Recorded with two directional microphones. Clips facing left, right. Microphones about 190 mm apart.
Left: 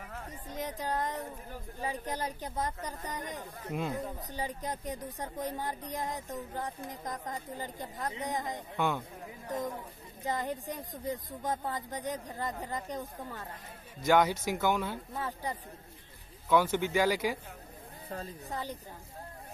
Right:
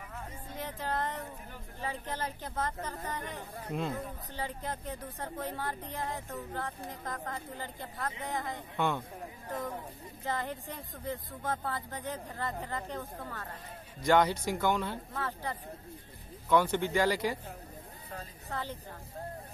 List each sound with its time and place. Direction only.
0.6 s music: 15° left (ahead or behind)
1.8 s speech: 15° left (ahead or behind)
8.7 s speech: centre (ahead or behind)
10.2 s speech: 15° left (ahead or behind)
14.0 s speech: centre (ahead or behind)
15.1 s speech: 15° left (ahead or behind)
18.5 s speech: 15° left (ahead or behind)